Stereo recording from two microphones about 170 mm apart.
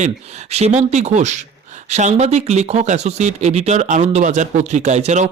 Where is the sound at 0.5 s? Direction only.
40° right (ahead or behind).